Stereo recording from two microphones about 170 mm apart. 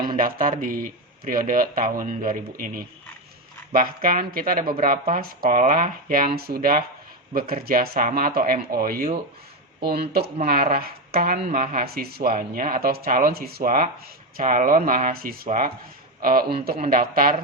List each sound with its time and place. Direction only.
0.2 s speech: 55° right (ahead or behind)
9.8 s speech: 65° right (ahead or behind)
10.4 s speech: 55° right (ahead or behind)